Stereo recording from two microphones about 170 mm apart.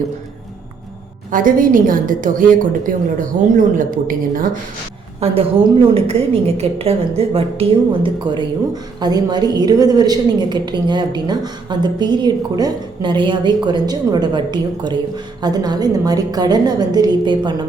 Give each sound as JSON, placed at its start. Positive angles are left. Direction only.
{"t": 1.3, "sound": "a woman's voice", "side_deg": -50}
{"t": 5.2, "sound": "a woman's voice", "side_deg": -35}